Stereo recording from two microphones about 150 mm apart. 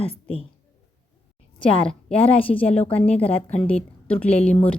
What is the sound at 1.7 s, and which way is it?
Speech, 40° left (ahead or behind).